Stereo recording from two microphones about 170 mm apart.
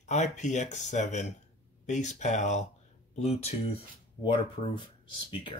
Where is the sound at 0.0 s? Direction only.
40° left (ahead or behind).